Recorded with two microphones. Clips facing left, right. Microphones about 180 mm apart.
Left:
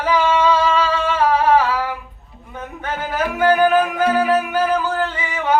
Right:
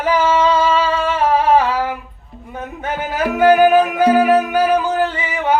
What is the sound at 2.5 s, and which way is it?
Music, 20° right (ahead or behind).